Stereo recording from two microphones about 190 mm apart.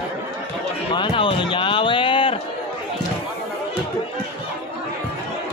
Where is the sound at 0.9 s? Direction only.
25° left (ahead or behind).